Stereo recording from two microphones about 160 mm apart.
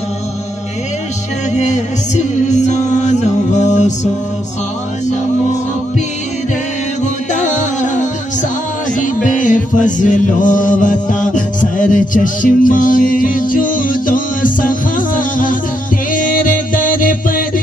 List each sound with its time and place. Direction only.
1.5 s music: 50° left (ahead or behind)
7.3 s music: 50° left (ahead or behind)
8.9 s chant: 55° left (ahead or behind)
16.1 s music: 55° left (ahead or behind)